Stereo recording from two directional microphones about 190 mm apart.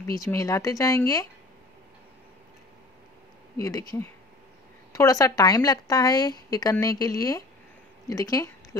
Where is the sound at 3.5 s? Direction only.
20° left (ahead or behind).